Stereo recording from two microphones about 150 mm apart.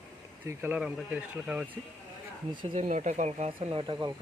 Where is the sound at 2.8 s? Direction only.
55° right (ahead or behind); by 4.1 s 35° right (ahead or behind).